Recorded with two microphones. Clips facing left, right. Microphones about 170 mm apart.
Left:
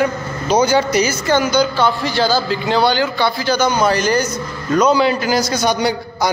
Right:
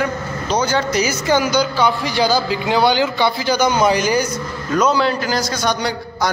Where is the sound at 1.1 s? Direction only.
15° right (ahead or behind).